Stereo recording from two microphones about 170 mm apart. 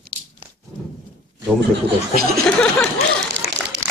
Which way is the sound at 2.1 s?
65° right (ahead or behind).